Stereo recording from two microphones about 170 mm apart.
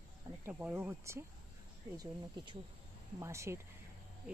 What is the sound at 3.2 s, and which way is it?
Speech, 15° right (ahead or behind).